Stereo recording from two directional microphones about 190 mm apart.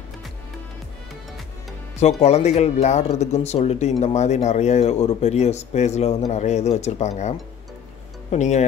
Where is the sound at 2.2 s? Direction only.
35° left (ahead or behind).